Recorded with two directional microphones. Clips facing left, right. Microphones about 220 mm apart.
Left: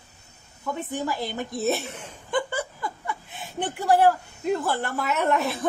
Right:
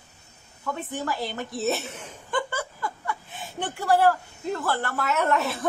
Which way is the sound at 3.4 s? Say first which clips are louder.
Left 2 dB; 15° left (ahead or behind).